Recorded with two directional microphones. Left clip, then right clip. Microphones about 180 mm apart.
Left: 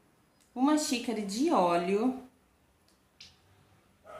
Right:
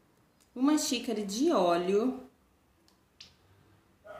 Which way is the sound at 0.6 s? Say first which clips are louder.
Left 1 dB; 30° left (ahead or behind).